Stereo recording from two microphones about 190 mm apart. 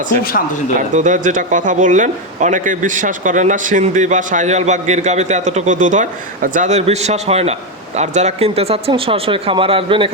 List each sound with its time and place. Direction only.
0.8 s speech: 40° right (ahead or behind)